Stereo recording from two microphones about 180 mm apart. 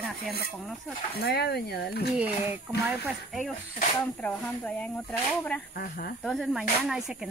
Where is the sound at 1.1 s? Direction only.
60° left (ahead or behind).